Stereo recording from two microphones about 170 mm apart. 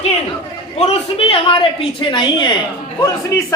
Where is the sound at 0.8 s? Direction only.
35° left (ahead or behind).